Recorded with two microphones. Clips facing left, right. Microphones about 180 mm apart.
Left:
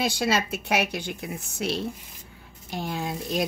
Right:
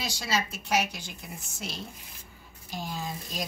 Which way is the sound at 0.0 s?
55° left (ahead or behind).